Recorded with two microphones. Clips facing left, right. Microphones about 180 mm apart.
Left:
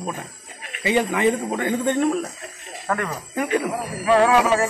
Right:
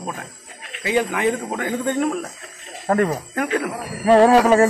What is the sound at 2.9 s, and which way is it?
Music, 40° right (ahead or behind).